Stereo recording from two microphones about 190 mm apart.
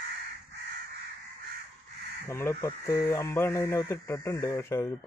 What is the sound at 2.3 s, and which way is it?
Speech, 15° left (ahead or behind).